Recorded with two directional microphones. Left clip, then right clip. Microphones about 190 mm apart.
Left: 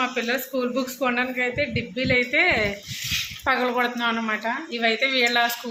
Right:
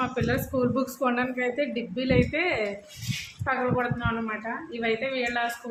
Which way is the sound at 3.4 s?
40° left (ahead or behind).